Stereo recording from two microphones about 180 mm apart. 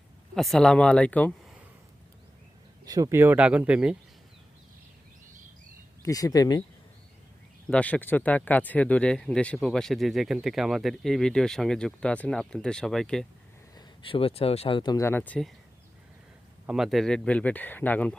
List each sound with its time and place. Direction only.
0.3 s speech: centre (ahead or behind)
2.8 s speech: 20° right (ahead or behind)
6.0 s speech: 20° left (ahead or behind)
7.7 s speech: 5° left (ahead or behind)
13.7 s speech: 30° left (ahead or behind)
15.0 s speech: 10° left (ahead or behind)
16.6 s speech: centre (ahead or behind)